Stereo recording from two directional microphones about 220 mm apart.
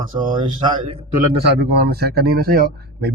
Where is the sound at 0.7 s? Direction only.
25° right (ahead or behind).